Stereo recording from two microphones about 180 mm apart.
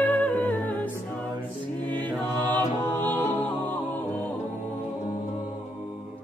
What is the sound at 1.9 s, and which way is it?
Music, 25° right (ahead or behind).